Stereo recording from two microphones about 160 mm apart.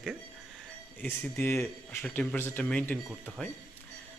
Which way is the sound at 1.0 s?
15° left (ahead or behind).